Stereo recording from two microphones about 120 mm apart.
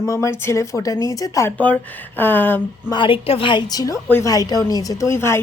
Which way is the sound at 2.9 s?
45° left (ahead or behind).